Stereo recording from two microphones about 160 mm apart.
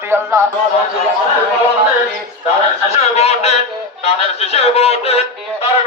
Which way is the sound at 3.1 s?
40° left (ahead or behind).